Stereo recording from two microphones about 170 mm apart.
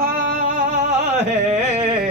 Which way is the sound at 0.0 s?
50° right (ahead or behind).